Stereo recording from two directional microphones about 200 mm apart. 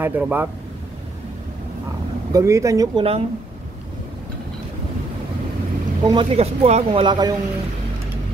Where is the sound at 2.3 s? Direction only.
15° right (ahead or behind).